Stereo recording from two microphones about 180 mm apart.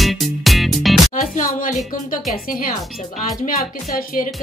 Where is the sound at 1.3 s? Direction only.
50° left (ahead or behind).